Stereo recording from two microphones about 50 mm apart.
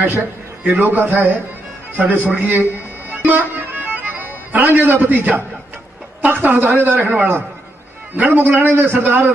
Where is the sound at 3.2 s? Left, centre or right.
Right.